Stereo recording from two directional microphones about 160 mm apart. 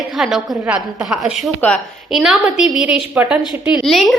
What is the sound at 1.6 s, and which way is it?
A woman's voice, 5° left (ahead or behind).